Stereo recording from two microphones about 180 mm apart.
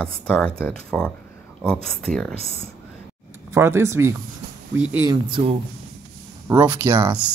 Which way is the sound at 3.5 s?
15° right (ahead or behind).